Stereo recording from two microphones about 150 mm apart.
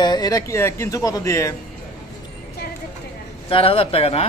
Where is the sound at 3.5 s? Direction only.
40° left (ahead or behind).